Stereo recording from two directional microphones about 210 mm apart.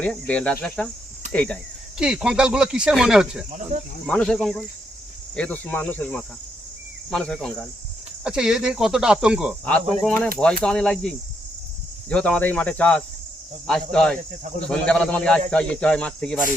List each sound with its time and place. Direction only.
0.0 s speech: 5° left (ahead or behind)
2.0 s speech: 5° right (ahead or behind)
3.5 s speech: 30° right (ahead or behind)
4.0 s speech: 5° left (ahead or behind)